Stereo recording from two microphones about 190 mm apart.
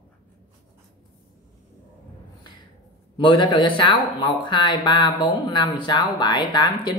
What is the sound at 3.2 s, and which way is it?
Speech, 25° left (ahead or behind).